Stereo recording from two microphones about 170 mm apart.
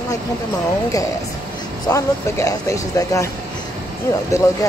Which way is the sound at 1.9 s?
15° left (ahead or behind).